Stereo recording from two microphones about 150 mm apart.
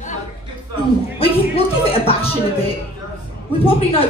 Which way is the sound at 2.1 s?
40° left (ahead or behind).